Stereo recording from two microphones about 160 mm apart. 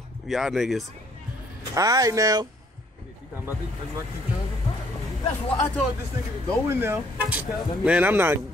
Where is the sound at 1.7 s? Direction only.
20° right (ahead or behind).